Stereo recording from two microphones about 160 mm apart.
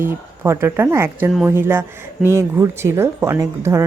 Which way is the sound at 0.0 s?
15° right (ahead or behind).